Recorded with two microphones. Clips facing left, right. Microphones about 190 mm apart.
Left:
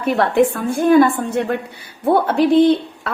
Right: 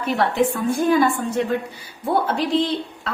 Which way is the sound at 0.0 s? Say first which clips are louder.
Left 5 dB; 55° left (ahead or behind).